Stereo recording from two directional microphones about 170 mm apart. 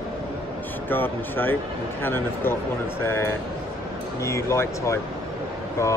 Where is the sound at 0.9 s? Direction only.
10° left (ahead or behind).